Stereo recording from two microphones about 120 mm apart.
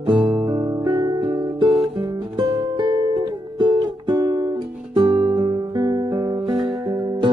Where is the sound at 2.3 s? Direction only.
40° right (ahead or behind).